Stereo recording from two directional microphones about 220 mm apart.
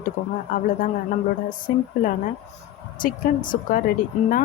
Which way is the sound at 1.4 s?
40° left (ahead or behind).